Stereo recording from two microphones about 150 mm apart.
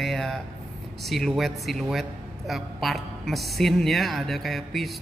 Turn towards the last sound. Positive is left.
turn(degrees=0)  # may be behind; listen again after turning